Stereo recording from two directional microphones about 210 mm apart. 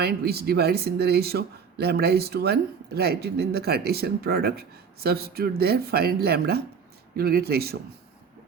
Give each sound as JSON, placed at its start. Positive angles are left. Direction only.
{"t": 0.0, "sound": "speech", "side_deg": -50}